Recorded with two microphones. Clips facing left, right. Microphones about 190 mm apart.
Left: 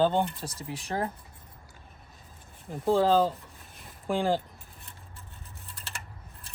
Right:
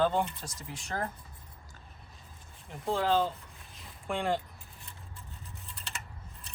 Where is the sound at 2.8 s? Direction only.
35° left (ahead or behind).